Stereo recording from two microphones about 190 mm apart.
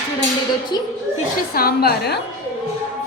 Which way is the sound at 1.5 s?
55° left (ahead or behind).